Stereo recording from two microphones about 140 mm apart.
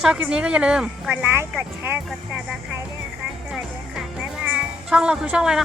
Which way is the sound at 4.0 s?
5° right (ahead or behind).